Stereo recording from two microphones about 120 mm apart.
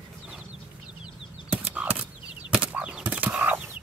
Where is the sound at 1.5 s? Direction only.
10° right (ahead or behind).